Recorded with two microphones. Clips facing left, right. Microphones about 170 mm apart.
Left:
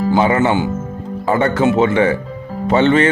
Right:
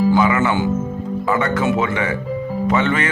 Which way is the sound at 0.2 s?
30° left (ahead or behind).